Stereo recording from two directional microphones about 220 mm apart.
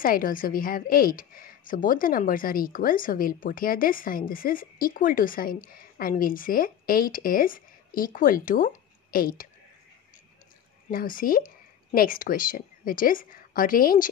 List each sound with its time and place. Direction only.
0.0 s speech: 40° left (ahead or behind)
10.9 s speech: 40° left (ahead or behind)